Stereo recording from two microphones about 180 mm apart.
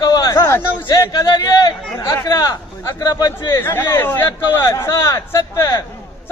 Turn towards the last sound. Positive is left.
turn(degrees=15)  # may be behind; listen again after turning